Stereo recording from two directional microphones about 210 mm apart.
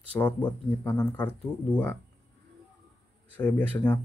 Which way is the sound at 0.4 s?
20° left (ahead or behind).